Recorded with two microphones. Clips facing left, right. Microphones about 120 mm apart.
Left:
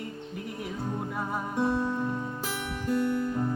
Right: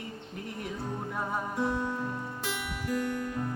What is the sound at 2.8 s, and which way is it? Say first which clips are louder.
Music: left 5 dB; 30° left (ahead or behind).